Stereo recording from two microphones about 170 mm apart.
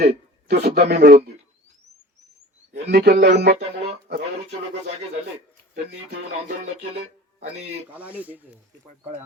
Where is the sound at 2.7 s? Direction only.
70° right (ahead or behind).